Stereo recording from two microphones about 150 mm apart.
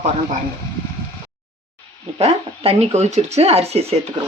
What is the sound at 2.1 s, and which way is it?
Speech, 40° right (ahead or behind).